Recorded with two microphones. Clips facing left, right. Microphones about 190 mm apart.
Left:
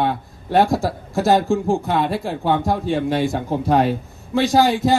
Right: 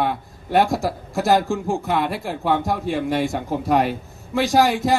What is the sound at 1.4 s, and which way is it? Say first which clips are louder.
Speech: left 4 dB; 30° left (ahead or behind).